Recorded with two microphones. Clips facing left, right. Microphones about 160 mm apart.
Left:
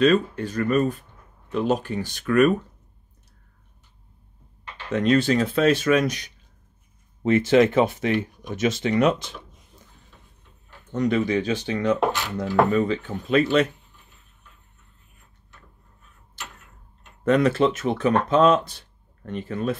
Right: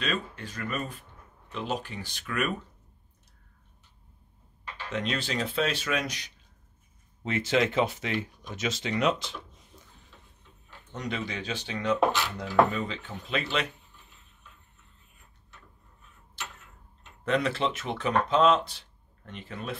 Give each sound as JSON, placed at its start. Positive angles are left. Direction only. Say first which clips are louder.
{"t": 0.0, "sound": "speech", "louder": "left 14 dB", "side_deg": 45}
{"t": 4.9, "sound": "speech", "louder": "left 12 dB", "side_deg": 45}
{"t": 10.9, "sound": "speech", "louder": "left 12 dB", "side_deg": 50}
{"t": 17.2, "sound": "speech", "louder": "left 8 dB", "side_deg": 45}